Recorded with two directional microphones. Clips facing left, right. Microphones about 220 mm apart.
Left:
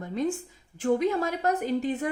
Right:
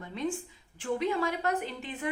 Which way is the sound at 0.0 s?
45° left (ahead or behind).